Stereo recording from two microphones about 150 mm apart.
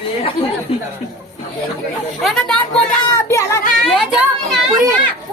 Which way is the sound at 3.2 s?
20° left (ahead or behind).